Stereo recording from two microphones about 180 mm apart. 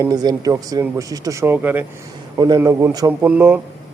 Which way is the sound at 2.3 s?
20° right (ahead or behind).